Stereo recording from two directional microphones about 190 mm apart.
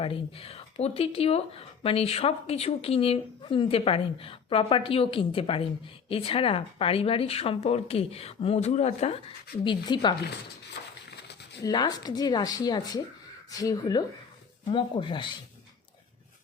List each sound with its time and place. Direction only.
0.0 s speech: 30° left (ahead or behind)
9.6 s speech: 25° left (ahead or behind)
10.8 s a sound: 65° left (ahead or behind)
11.6 s speech: 20° left (ahead or behind)